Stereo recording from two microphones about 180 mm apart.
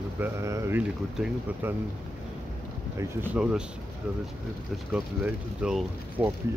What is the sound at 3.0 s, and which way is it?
Speech, 10° right (ahead or behind).